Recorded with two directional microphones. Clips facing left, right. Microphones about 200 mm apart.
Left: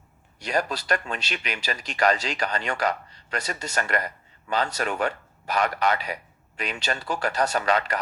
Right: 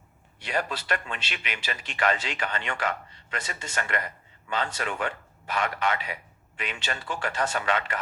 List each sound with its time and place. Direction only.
0.3 s speech: 40° left (ahead or behind)